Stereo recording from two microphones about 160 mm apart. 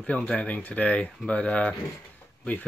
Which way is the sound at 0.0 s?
10° left (ahead or behind).